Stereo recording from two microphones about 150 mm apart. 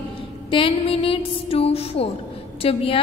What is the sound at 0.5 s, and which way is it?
A woman's voice, 35° left (ahead or behind).